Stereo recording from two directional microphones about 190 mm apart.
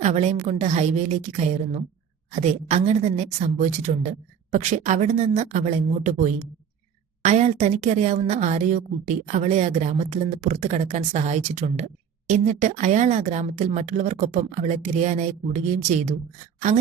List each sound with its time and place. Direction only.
0.0 s speech: 35° right (ahead or behind)